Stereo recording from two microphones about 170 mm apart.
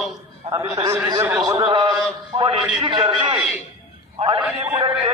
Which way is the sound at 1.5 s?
35° right (ahead or behind).